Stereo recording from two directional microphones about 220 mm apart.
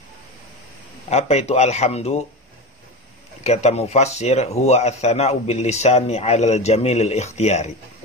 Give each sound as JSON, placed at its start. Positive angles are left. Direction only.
{"t": 1.1, "sound": "speech", "side_deg": 30}
{"t": 3.4, "sound": "speech", "side_deg": 30}